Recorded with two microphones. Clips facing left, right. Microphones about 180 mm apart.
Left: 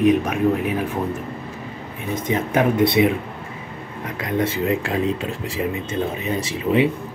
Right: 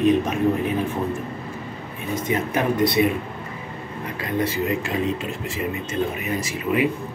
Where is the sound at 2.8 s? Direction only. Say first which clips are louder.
Left 2 dB; 25° left (ahead or behind).